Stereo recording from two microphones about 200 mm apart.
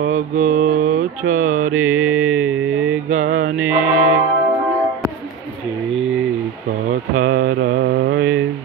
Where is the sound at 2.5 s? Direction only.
90° right.